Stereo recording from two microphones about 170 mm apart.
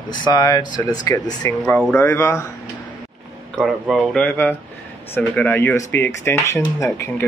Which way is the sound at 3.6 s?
Centre (ahead or behind).